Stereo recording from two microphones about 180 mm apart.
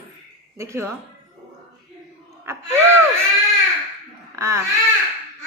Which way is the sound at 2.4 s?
15° right (ahead or behind).